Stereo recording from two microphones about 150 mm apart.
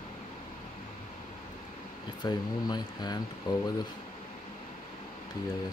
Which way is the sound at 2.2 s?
25° left (ahead or behind).